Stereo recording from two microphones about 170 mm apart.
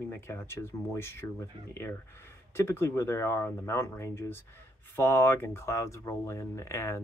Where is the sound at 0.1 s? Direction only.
15° left (ahead or behind).